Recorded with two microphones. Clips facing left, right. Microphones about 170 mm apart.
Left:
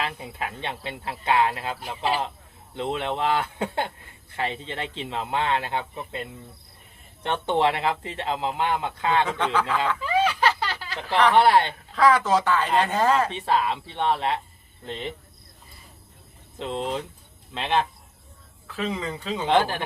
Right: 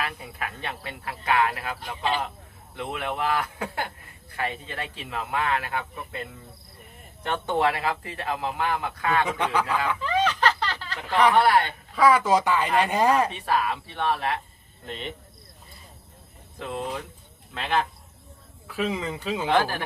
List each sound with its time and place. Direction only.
0.0 s speech: 25° left (ahead or behind)
9.4 s speech: 15° right (ahead or behind)
10.0 s a sound: 10° left (ahead or behind)
11.3 s speech: 25° left (ahead or behind)
11.9 s speech: 10° right (ahead or behind)
13.3 s speech: 20° left (ahead or behind)
16.6 s speech: 25° left (ahead or behind)
18.7 s speech: 10° right (ahead or behind)
19.5 s speech: 20° left (ahead or behind)